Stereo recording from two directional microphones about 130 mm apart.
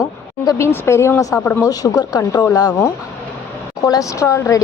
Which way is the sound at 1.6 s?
30° left (ahead or behind).